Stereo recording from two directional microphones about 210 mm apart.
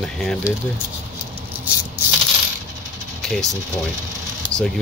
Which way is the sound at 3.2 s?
Centre (ahead or behind).